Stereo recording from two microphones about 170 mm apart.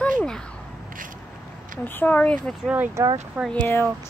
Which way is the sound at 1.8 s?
10° left (ahead or behind).